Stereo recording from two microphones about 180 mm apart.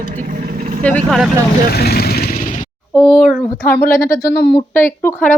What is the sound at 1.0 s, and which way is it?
Speech, centre (ahead or behind).